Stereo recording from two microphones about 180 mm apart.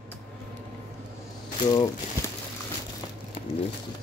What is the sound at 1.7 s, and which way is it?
Speech, 25° left (ahead or behind).